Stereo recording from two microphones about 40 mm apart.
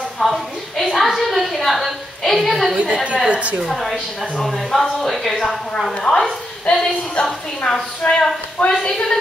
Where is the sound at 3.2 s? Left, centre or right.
Right.